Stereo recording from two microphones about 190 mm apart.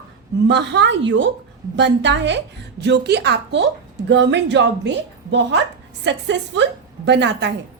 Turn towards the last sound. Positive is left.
turn(degrees=-65)  # may be behind; listen again after turning